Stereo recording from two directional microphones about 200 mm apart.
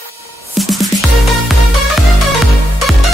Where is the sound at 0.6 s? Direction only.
Centre (ahead or behind).